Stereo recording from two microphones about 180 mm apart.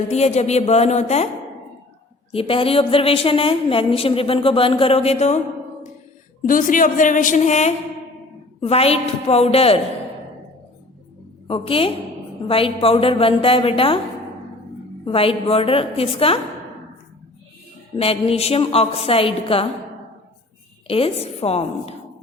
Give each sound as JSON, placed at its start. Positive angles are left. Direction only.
{"t": 0.1, "sound": "a woman's voice", "side_deg": 35}
{"t": 2.3, "sound": "a woman's voice", "side_deg": 30}
{"t": 6.4, "sound": "a woman's voice", "side_deg": 50}
{"t": 11.4, "sound": "a woman's voice", "side_deg": 30}
{"t": 15.0, "sound": "a woman's voice", "side_deg": 30}
{"t": 17.9, "sound": "a woman's voice", "side_deg": 30}
{"t": 20.8, "sound": "a woman's voice", "side_deg": 30}